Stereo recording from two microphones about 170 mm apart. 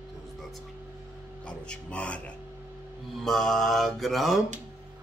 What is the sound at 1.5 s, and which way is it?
Speech, 5° left (ahead or behind).